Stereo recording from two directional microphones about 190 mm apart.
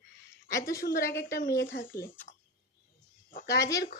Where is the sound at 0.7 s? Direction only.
50° left (ahead or behind).